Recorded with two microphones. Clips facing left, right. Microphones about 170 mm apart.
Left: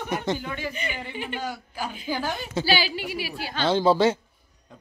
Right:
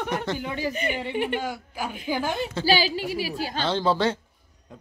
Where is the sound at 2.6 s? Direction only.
40° right (ahead or behind).